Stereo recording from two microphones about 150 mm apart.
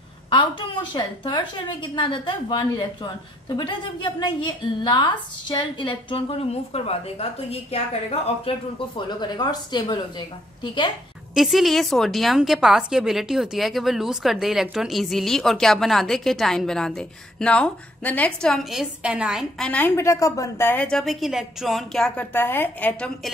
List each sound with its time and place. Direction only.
0.3 s a woman's voice: 30° left (ahead or behind)
11.3 s a woman's voice: centre (ahead or behind)
19.6 s a woman's voice: 10° left (ahead or behind)